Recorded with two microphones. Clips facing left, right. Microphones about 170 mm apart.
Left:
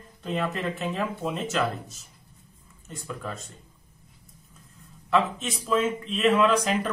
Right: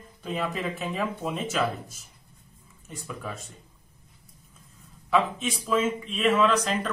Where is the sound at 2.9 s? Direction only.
5° right (ahead or behind).